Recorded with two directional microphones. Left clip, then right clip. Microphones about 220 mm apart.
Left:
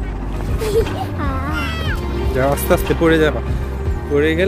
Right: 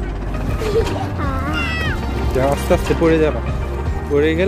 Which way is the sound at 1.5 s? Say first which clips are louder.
Right 2 dB; 35° left (ahead or behind).